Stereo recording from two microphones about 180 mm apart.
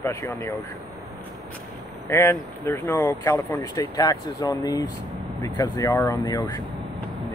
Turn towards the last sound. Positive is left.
turn(degrees=20)  # may be behind; listen again after turning